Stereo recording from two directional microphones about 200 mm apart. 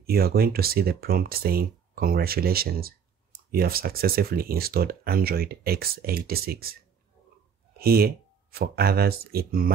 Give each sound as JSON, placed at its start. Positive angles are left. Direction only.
{"t": 0.0, "sound": "speech", "side_deg": -50}
{"t": 7.8, "sound": "speech", "side_deg": -50}